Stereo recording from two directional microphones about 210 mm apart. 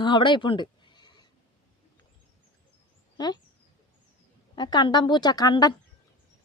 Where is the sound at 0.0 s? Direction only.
20° left (ahead or behind).